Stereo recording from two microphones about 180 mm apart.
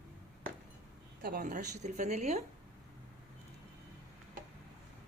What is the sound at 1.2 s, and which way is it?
Speech, 55° right (ahead or behind).